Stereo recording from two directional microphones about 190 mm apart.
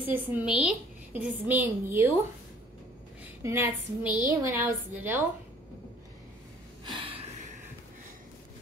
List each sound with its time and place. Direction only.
0.0 s a woman's voice: 10° right (ahead or behind)
3.4 s a woman's voice: 15° right (ahead or behind)
6.8 s a sound: 25° right (ahead or behind)